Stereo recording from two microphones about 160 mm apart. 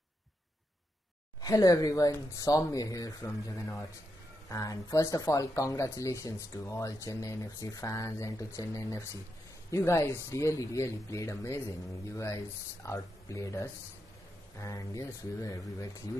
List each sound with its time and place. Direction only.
1.4 s speech: 20° left (ahead or behind)
12.8 s speech: 20° left (ahead or behind)